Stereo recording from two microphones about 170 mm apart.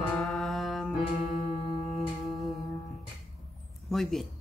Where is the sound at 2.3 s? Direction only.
Centre (ahead or behind).